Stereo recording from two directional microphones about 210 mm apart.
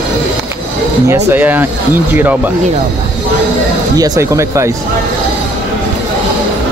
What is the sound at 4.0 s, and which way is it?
Speech, 15° right (ahead or behind).